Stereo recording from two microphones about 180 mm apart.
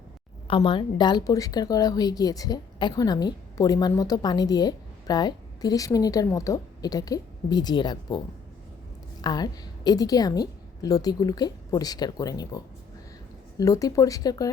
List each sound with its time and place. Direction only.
0.4 s a woman's voice: 30° left (ahead or behind)
9.2 s a woman's voice: 20° left (ahead or behind)